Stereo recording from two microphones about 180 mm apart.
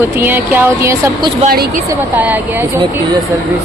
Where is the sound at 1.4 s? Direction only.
50° right (ahead or behind).